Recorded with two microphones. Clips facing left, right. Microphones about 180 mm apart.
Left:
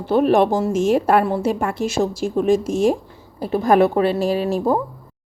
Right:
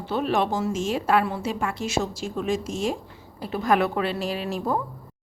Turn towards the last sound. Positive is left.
turn(degrees=40)  # may be behind; listen again after turning